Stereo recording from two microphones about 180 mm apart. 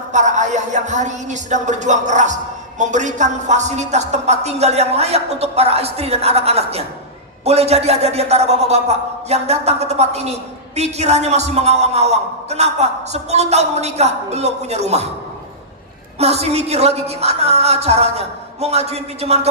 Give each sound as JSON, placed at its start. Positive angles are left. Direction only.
{"t": 0.1, "sound": "a man's voice", "side_deg": -40}
{"t": 16.1, "sound": "a man's voice", "side_deg": -35}